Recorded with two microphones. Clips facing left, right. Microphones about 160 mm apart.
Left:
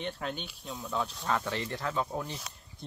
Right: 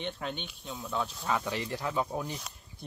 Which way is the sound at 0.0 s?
Centre (ahead or behind).